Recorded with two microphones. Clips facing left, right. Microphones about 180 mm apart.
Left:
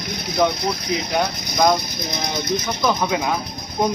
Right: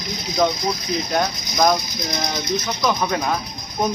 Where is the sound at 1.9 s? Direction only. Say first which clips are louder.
Right 1 dB; 55° left (ahead or behind).